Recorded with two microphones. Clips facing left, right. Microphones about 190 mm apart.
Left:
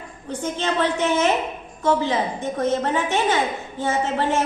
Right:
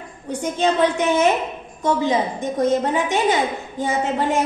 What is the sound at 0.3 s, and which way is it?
A woman's voice, 15° right (ahead or behind).